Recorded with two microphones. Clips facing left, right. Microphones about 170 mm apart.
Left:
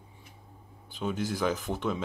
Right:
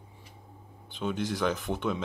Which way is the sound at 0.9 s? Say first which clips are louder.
Even; 5° left (ahead or behind).